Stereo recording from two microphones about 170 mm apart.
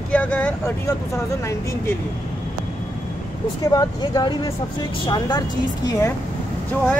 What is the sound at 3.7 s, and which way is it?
A woman's voice, 20° left (ahead or behind).